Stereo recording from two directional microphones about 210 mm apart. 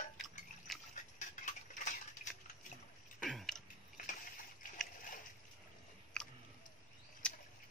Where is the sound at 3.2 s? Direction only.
Centre (ahead or behind).